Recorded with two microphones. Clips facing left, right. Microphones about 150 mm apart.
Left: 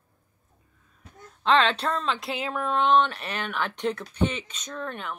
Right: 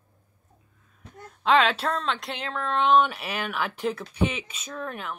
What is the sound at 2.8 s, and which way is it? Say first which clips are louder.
A woman's voice: right 2 dB; 5° right (ahead or behind).